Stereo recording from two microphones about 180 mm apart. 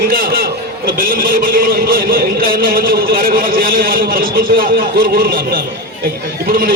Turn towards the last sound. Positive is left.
turn(degrees=-55)  # may be behind; listen again after turning